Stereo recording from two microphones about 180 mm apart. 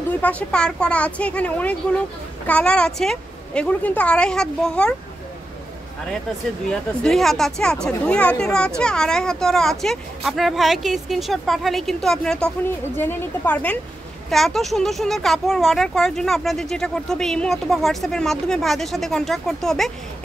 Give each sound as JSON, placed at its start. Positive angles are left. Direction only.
{"t": 0.1, "sound": "speech", "side_deg": 5}
{"t": 6.7, "sound": "speech", "side_deg": 5}